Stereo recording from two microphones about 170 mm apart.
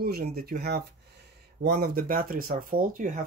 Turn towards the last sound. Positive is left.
turn(degrees=-50)  # may be behind; listen again after turning